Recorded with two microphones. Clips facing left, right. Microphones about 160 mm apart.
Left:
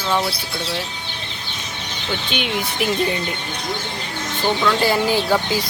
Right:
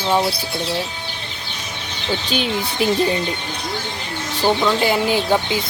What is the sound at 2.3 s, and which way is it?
Speech, 30° right (ahead or behind).